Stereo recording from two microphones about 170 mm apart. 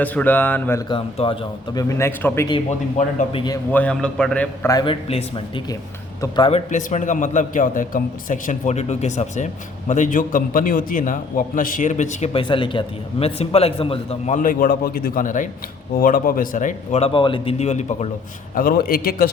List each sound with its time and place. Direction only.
0.0 s speech: 10° left (ahead or behind)
0.9 s a man's voice: 30° left (ahead or behind)
3.3 s a man's voice: 25° left (ahead or behind)
3.7 s speech: 10° left (ahead or behind)
4.6 s a man's voice: 25° left (ahead or behind)
6.5 s a man's voice: 45° left (ahead or behind)
12.3 s a man's voice: 30° left (ahead or behind)
18.5 s a man's voice: 60° left (ahead or behind)